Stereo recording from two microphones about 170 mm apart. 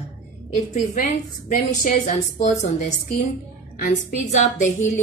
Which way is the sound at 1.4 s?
45° left (ahead or behind).